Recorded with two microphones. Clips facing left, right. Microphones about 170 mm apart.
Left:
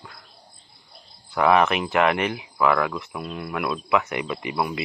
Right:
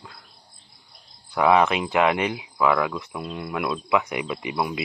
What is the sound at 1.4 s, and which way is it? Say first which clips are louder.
Cricket: even; 15° right (ahead or behind).